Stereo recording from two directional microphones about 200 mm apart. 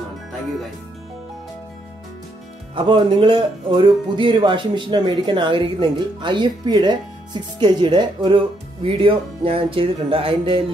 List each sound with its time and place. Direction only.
2.7 s speech: 25° right (ahead or behind)